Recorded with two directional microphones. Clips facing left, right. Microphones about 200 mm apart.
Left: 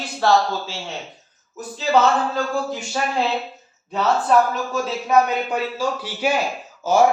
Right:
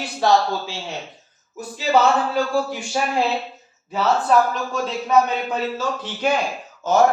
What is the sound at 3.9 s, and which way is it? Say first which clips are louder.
A man's voice: even; centre (ahead or behind).